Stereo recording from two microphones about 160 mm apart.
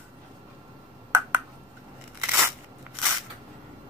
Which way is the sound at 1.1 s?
15° right (ahead or behind).